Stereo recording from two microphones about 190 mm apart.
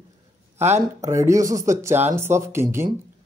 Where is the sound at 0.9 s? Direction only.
15° right (ahead or behind).